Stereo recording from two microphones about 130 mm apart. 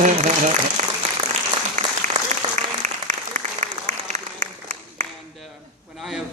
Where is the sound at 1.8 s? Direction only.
65° right (ahead or behind).